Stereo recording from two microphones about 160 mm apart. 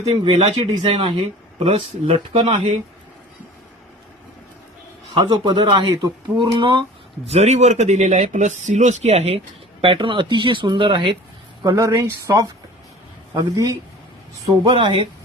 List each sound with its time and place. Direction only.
0.1 s speech: 30° right (ahead or behind)
5.1 s speech: 30° right (ahead or behind)
7.3 s speech: 40° right (ahead or behind)
11.6 s speech: 20° right (ahead or behind)